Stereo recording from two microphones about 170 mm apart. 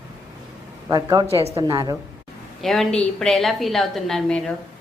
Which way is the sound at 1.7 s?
20° right (ahead or behind).